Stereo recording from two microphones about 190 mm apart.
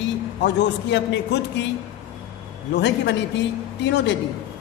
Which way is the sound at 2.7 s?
65° left (ahead or behind).